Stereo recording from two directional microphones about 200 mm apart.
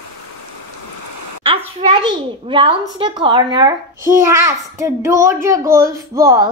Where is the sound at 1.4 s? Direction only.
25° right (ahead or behind).